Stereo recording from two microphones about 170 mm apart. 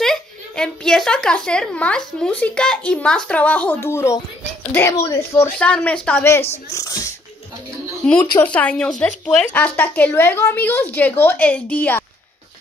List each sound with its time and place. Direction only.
0.0 s a child's voice: 5° left (ahead or behind); by 7.2 s 20° left (ahead or behind)
8.0 s a woman's voice: 5° left (ahead or behind)